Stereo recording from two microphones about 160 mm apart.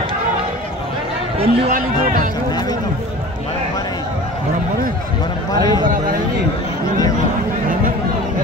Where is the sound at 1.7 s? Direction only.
55° right (ahead or behind).